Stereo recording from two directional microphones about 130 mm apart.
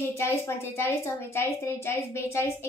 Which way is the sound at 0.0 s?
20° left (ahead or behind).